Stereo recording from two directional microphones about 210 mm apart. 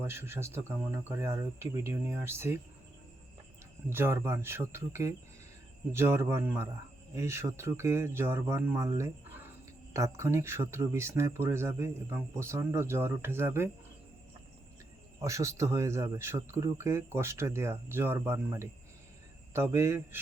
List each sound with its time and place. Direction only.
0.0 s speech: 10° right (ahead or behind)
3.8 s speech: 10° right (ahead or behind)
15.2 s speech: 15° right (ahead or behind)
19.7 s speech: 15° right (ahead or behind)